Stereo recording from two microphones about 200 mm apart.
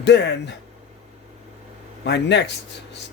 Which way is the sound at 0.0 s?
60° left (ahead or behind).